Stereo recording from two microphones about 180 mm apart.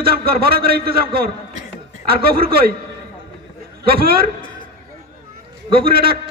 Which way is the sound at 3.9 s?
60° right (ahead or behind).